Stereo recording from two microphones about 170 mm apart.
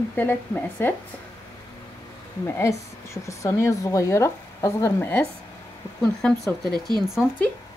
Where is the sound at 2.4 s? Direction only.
15° left (ahead or behind).